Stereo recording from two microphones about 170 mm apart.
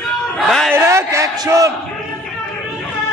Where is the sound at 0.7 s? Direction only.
15° right (ahead or behind).